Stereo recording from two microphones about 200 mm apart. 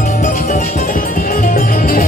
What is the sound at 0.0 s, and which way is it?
Music, 40° left (ahead or behind).